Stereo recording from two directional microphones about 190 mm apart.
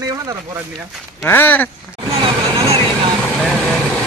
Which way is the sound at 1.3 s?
10° left (ahead or behind).